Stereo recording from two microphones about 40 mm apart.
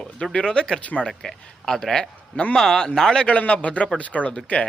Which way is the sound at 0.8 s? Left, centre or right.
Left.